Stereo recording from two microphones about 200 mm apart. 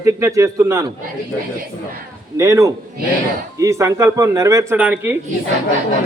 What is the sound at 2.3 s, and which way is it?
A man's voice, 15° right (ahead or behind).